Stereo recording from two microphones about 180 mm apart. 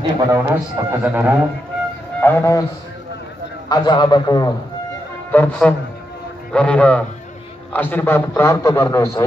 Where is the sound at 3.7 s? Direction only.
25° left (ahead or behind).